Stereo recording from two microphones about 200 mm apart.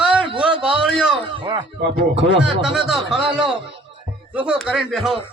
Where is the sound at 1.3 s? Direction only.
25° right (ahead or behind).